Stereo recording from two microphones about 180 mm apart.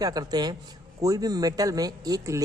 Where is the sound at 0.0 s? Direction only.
20° right (ahead or behind).